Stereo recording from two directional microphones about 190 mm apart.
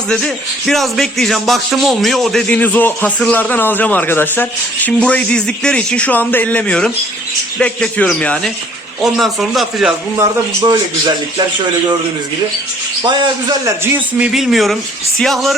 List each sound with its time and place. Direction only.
0.1 s speech: centre (ahead or behind)
10.2 s a man's voice: 20° right (ahead or behind)
13.1 s a man's voice: 25° right (ahead or behind)
13.8 s speech: 10° right (ahead or behind)